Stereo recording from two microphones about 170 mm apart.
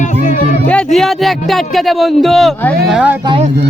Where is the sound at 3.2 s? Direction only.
25° right (ahead or behind).